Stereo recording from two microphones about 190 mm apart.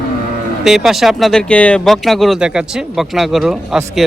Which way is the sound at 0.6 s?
Centre (ahead or behind).